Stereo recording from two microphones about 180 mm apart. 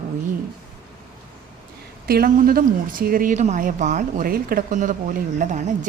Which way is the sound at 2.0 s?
55° right (ahead or behind).